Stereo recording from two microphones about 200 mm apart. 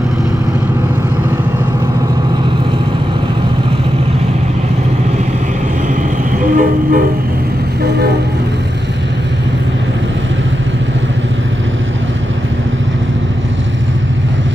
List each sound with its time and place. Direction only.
6.5 s train: 45° right (ahead or behind)